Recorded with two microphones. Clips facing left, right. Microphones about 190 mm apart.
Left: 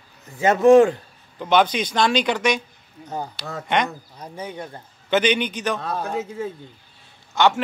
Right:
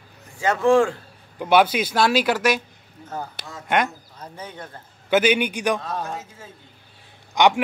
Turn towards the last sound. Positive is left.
turn(degrees=-15)  # may be behind; listen again after turning